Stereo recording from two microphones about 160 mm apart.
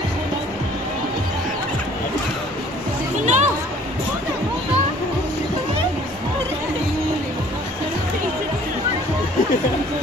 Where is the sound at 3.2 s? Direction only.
45° right (ahead or behind).